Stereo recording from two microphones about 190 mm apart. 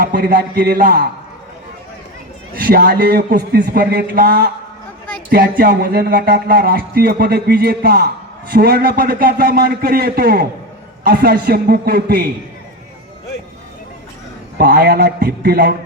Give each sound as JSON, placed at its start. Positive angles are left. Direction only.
{"t": 0.0, "sound": "a man's voice", "side_deg": -55}
{"t": 2.6, "sound": "a man's voice", "side_deg": -55}
{"t": 14.6, "sound": "speech", "side_deg": -55}